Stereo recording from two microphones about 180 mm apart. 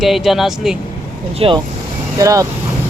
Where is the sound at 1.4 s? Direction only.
30° right (ahead or behind).